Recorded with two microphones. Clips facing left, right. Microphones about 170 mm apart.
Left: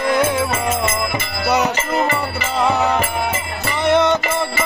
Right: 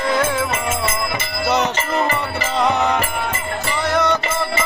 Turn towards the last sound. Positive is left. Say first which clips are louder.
# left 4 dB
turn(degrees=25)  # may be behind; listen again after turning